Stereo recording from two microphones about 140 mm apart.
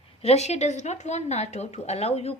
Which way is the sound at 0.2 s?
50° left (ahead or behind).